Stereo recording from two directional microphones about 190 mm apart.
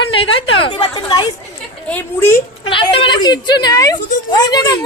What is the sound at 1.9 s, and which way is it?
Speech, 10° left (ahead or behind).